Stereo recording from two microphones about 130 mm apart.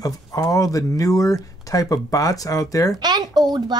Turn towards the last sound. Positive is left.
turn(degrees=-30)  # may be behind; listen again after turning